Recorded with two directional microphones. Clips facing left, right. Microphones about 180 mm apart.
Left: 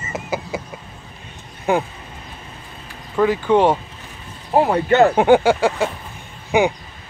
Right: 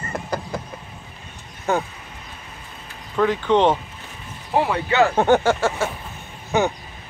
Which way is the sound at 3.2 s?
10° left (ahead or behind).